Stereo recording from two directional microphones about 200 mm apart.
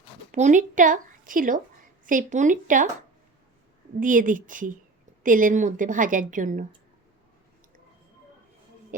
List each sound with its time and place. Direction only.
0.3 s a woman's voice: 40° right (ahead or behind)
4.0 s a woman's voice: 40° right (ahead or behind)